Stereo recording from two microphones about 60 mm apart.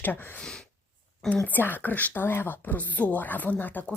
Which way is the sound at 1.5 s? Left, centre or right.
Left.